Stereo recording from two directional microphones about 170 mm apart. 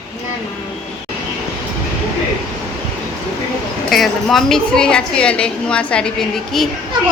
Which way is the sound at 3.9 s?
Centre (ahead or behind).